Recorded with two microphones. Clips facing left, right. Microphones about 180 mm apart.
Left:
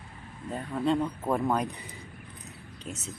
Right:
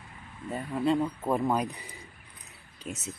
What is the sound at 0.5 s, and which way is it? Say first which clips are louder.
Speech: even; 5° right (ahead or behind).